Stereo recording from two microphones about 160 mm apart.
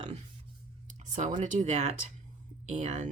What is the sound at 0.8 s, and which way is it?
Speech, 50° right (ahead or behind).